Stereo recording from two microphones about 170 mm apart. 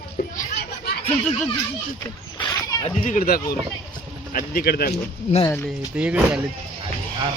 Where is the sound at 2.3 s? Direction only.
25° left (ahead or behind).